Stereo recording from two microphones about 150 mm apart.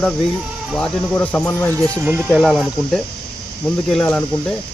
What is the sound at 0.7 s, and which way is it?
Speech, 5° left (ahead or behind).